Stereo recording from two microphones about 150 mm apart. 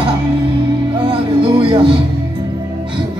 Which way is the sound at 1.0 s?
35° right (ahead or behind).